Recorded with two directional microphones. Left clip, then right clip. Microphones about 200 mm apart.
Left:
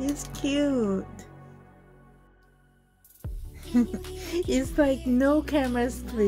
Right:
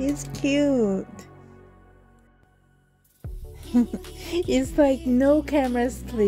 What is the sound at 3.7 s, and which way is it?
A woman's voice, 20° right (ahead or behind).